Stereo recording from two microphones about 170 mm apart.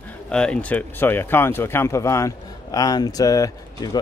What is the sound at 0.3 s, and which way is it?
Speech, 5° left (ahead or behind).